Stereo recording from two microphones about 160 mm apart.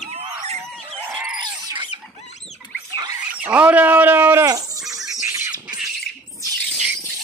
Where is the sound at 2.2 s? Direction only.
45° left (ahead or behind).